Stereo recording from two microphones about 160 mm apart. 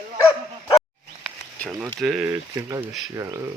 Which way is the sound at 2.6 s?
20° right (ahead or behind).